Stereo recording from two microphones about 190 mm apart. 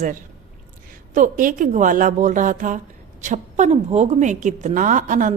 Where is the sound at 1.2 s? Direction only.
45° right (ahead or behind).